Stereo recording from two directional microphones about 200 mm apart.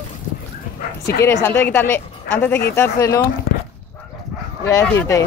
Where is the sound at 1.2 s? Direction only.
10° left (ahead or behind).